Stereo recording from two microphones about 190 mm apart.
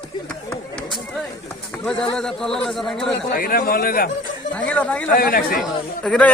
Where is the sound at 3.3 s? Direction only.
50° left (ahead or behind).